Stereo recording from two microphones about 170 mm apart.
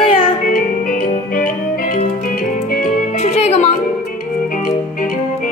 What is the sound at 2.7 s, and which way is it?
Music, 50° left (ahead or behind).